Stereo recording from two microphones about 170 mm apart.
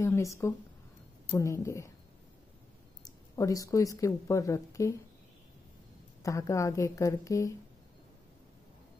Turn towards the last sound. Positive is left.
turn(degrees=20)  # may be behind; listen again after turning